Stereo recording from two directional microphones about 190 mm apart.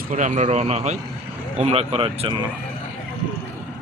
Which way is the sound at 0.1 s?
40° right (ahead or behind).